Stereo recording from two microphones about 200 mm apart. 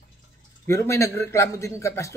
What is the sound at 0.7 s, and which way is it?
Speech, 15° left (ahead or behind).